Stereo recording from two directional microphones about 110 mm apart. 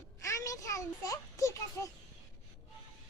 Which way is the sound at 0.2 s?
30° left (ahead or behind).